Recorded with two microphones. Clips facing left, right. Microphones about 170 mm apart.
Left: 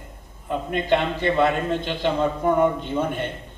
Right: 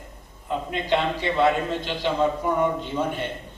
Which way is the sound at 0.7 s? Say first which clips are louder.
Left 3 dB; 55° left (ahead or behind).